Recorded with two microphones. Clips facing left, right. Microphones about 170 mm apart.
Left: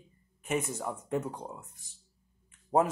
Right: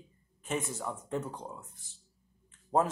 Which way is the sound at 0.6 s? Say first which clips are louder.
Left 2 dB; 15° left (ahead or behind).